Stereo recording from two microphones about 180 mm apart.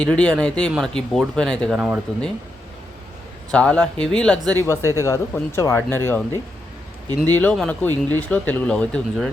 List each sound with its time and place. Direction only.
0.0 s speech: 5° left (ahead or behind)
3.5 s speech: 5° left (ahead or behind)
4.6 s speech: 15° left (ahead or behind)